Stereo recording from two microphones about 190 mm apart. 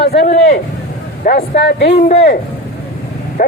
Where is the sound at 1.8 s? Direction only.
35° left (ahead or behind).